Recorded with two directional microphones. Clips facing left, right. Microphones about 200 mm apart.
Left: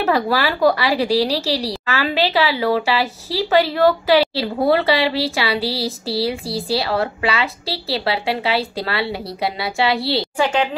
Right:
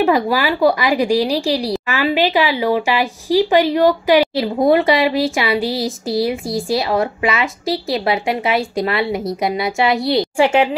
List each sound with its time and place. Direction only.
0.0 s a woman's voice: 10° right (ahead or behind)